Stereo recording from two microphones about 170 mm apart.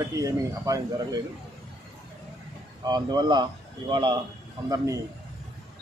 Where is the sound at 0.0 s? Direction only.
20° right (ahead or behind).